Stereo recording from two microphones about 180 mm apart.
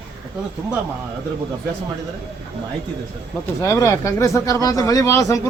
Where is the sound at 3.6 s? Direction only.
15° left (ahead or behind).